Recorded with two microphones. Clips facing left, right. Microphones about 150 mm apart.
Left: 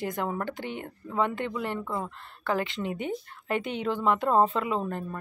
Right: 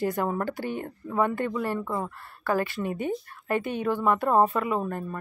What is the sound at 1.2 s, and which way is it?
Speech, 20° left (ahead or behind).